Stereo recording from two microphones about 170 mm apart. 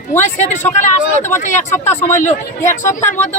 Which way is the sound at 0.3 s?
45° left (ahead or behind).